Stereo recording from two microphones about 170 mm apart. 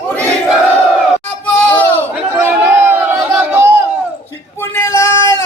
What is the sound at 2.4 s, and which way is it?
Chatter, 15° right (ahead or behind).